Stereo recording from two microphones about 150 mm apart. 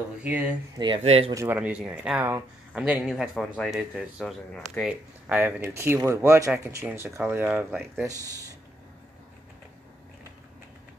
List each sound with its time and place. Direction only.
0.2 s speech: 10° right (ahead or behind)
0.7 s speech: 30° right (ahead or behind)
1.0 s speech: 40° right (ahead or behind)
1.3 s speech: 15° right (ahead or behind)
5.6 s speech: 20° right (ahead or behind)
7.7 s speech: centre (ahead or behind)